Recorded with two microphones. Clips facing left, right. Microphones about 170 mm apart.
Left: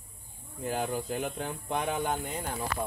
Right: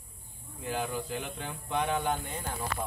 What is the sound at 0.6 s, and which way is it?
Speech, 45° left (ahead or behind).